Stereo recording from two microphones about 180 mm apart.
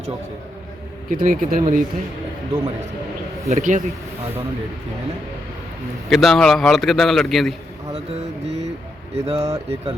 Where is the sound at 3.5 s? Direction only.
45° right (ahead or behind).